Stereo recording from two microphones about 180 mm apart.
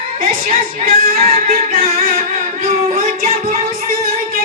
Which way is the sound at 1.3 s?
55° right (ahead or behind).